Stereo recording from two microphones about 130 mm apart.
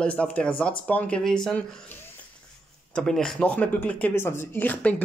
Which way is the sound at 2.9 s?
5° left (ahead or behind).